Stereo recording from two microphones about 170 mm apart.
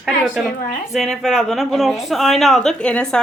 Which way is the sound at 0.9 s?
Centre (ahead or behind).